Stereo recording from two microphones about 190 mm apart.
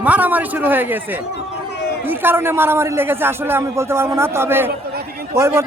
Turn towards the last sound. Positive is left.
turn(degrees=-15)  # may be behind; listen again after turning